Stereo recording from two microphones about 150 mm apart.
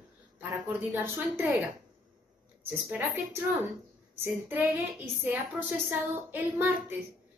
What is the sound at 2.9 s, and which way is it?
A woman's voice, 10° right (ahead or behind).